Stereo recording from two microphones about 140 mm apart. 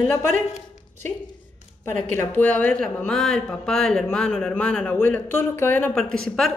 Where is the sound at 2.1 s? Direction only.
10° left (ahead or behind).